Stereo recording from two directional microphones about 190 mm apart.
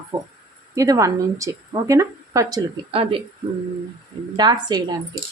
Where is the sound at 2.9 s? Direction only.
30° right (ahead or behind).